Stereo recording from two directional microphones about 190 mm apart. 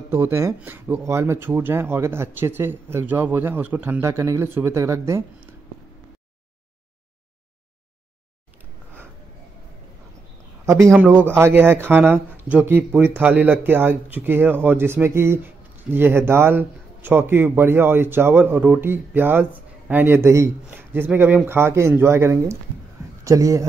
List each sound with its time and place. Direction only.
0.1 s speech: 15° right (ahead or behind)
10.6 s a sound: 15° right (ahead or behind)
10.9 s speech: 10° right (ahead or behind)